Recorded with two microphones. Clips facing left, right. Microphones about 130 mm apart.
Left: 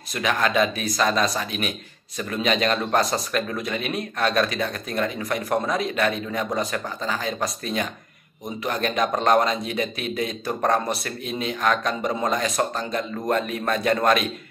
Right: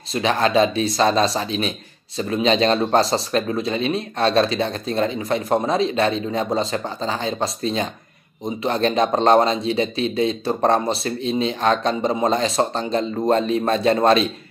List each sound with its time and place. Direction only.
0.1 s a man's voice: 30° right (ahead or behind)